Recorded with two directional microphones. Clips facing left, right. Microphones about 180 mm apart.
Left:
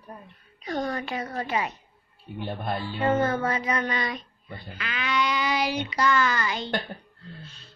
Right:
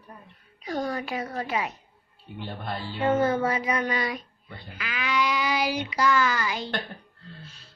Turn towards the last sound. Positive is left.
turn(degrees=-5)  # may be behind; listen again after turning